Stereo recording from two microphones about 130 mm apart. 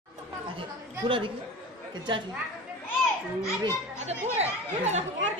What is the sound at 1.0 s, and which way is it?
Speech, 40° right (ahead or behind).